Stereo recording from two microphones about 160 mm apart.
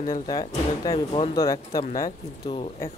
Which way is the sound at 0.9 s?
35° left (ahead or behind).